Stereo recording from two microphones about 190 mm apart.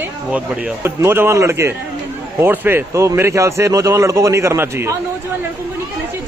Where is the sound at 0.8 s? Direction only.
10° right (ahead or behind).